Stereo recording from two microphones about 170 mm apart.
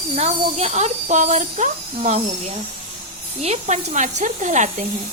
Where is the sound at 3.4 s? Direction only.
40° right (ahead or behind).